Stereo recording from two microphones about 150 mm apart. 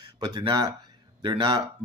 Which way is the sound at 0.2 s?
30° right (ahead or behind).